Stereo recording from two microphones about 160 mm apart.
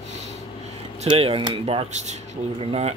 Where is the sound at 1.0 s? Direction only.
35° right (ahead or behind).